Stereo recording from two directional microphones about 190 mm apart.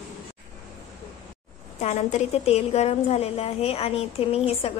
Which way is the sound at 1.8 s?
35° left (ahead or behind).